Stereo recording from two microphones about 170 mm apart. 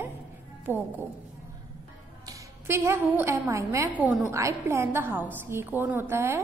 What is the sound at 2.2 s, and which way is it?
A woman's voice, 20° right (ahead or behind).